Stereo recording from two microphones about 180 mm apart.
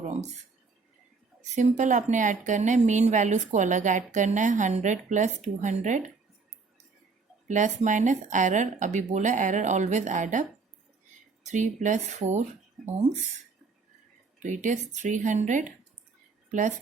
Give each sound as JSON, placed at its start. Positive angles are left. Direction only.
{"t": 1.4, "sound": "speech", "side_deg": -45}
{"t": 7.4, "sound": "speech", "side_deg": -40}
{"t": 11.4, "sound": "speech", "side_deg": -40}
{"t": 14.3, "sound": "speech", "side_deg": -45}